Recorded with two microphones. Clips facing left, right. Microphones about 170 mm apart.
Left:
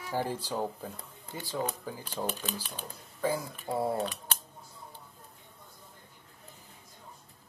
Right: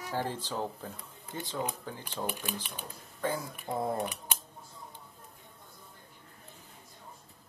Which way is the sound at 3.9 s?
15° right (ahead or behind).